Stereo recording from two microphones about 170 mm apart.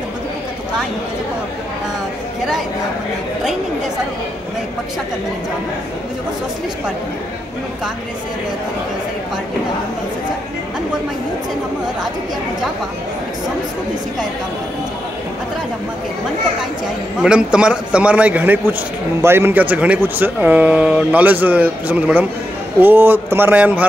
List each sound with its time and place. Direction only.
17.2 s speech: 5° right (ahead or behind)